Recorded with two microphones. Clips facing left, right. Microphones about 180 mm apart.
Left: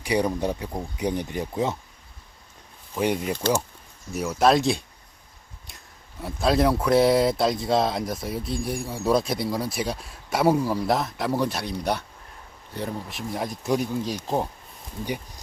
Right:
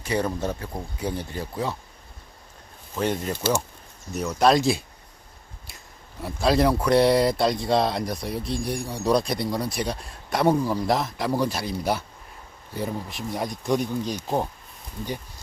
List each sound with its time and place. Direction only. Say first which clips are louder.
0.0 s speech: left 2 dB; 15° left (ahead or behind)
2.9 s speech: left 1 dB; 10° left (ahead or behind)
6.2 s speech: right 1 dB; centre (ahead or behind)